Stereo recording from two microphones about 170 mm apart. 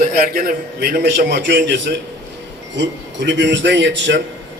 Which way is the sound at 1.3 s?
90° right.